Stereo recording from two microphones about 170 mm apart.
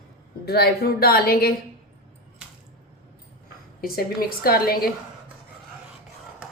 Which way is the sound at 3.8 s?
60° left (ahead or behind).